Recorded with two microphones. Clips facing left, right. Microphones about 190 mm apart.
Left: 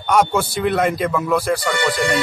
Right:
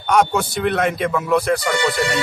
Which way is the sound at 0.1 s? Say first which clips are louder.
Even; centre (ahead or behind).